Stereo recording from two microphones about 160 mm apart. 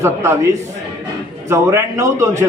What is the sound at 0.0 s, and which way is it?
A man's voice, 15° right (ahead or behind).